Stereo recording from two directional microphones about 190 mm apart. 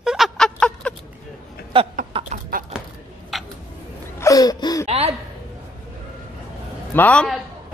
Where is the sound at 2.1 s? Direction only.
30° right (ahead or behind).